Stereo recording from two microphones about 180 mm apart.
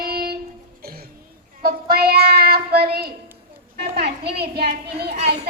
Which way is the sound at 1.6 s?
60° right (ahead or behind).